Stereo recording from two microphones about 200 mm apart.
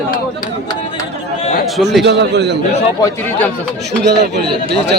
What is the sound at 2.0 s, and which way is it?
Speech, 60° right (ahead or behind).